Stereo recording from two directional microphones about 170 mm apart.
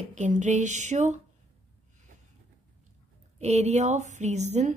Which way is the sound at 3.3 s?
40° right (ahead or behind).